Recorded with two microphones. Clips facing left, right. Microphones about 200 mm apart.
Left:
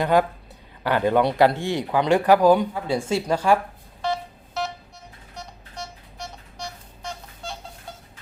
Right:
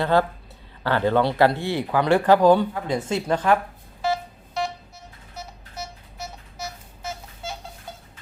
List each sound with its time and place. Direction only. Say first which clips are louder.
0.0 s speech: left 1 dB; 15° left (ahead or behind)
4.0 s telephone dialing: right 2 dB; centre (ahead or behind)
5.3 s a sound: right 1 dB; 5° right (ahead or behind)